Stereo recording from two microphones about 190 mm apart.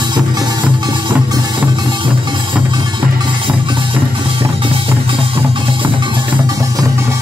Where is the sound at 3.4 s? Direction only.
25° right (ahead or behind).